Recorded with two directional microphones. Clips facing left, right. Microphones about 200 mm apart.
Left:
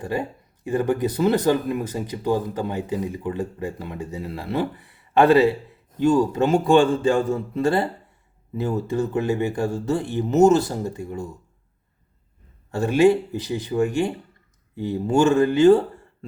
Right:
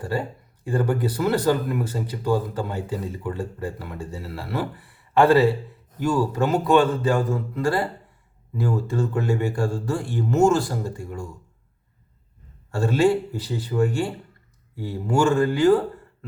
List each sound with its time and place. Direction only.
0.0 s speech: 20° left (ahead or behind)
12.7 s speech: 20° left (ahead or behind)